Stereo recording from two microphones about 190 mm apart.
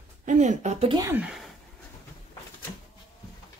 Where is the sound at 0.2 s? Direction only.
40° right (ahead or behind).